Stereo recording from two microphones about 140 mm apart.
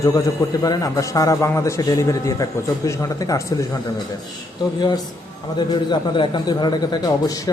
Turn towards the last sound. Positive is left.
turn(degrees=25)  # may be behind; listen again after turning